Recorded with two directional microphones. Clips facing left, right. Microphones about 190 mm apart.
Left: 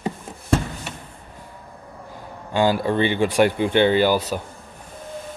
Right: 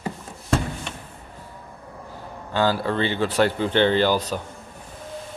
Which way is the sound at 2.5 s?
15° left (ahead or behind).